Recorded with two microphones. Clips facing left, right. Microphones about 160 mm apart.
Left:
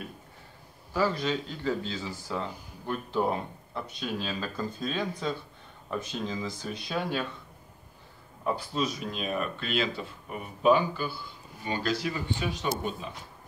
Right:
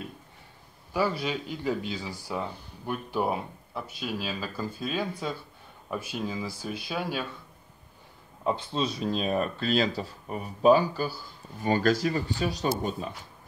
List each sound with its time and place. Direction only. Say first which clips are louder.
0.9 s speech: even; 10° right (ahead or behind)
8.5 s speech: right 1 dB; 25° right (ahead or behind)